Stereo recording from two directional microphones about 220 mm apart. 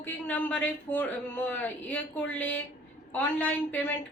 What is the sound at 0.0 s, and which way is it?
A woman's voice, 10° left (ahead or behind).